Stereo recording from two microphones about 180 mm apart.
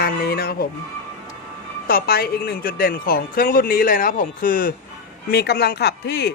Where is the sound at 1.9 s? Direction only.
55° left (ahead or behind).